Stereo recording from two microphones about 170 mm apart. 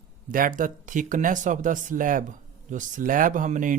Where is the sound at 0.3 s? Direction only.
55° right (ahead or behind).